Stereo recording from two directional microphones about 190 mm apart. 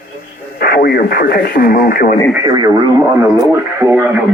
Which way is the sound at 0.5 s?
55° left (ahead or behind).